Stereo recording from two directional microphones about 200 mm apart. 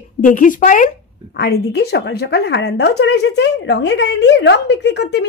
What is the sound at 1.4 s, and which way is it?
A woman's voice, 55° left (ahead or behind).